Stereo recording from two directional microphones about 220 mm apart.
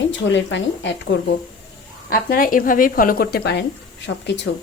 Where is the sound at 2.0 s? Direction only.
40° left (ahead or behind).